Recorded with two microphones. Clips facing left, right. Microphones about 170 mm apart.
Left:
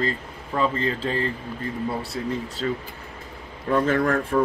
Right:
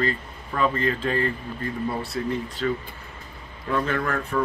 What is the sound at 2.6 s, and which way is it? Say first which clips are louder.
Speech: right 1 dB; 30° left (ahead or behind).